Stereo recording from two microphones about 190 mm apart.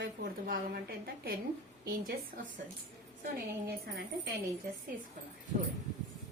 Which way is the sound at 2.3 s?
50° right (ahead or behind).